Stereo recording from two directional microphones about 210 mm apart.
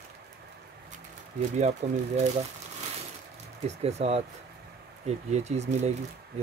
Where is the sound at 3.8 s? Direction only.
30° right (ahead or behind).